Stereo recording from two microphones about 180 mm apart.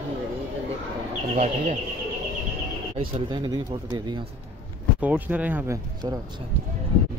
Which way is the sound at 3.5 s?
20° right (ahead or behind).